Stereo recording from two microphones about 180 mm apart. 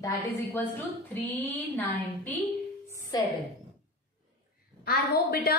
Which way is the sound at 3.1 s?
20° left (ahead or behind).